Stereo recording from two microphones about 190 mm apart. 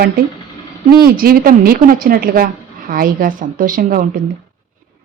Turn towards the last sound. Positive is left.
turn(degrees=-50)  # may be behind; listen again after turning